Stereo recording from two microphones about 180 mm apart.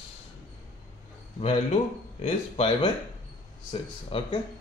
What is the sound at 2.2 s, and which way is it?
Speech, 30° left (ahead or behind).